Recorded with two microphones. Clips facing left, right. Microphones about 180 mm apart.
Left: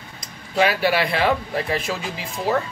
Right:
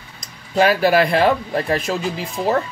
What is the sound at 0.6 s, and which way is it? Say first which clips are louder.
Speech: right 4 dB; 45° right (ahead or behind).